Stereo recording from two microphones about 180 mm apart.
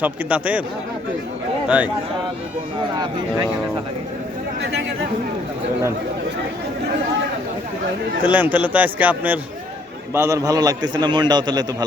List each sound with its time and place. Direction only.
0.0 s a man's voice: 10° right (ahead or behind)
1.6 s speech: 5° right (ahead or behind)
3.0 s a man's voice: 25° right (ahead or behind)
4.6 s speech: 75° right (ahead or behind)
8.2 s a man's voice: 10° right (ahead or behind)